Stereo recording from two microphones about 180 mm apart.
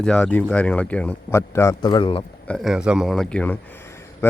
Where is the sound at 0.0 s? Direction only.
5° left (ahead or behind); by 2.2 s 30° left (ahead or behind).